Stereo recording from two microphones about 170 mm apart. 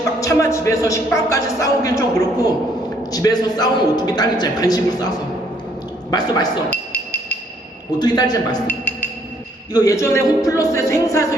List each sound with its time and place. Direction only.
0.2 s speech: 20° left (ahead or behind)
6.7 s a sound: 10° left (ahead or behind)
7.9 s speech: 25° left (ahead or behind)
8.6 s music: 10° left (ahead or behind)
9.7 s speech: 20° left (ahead or behind)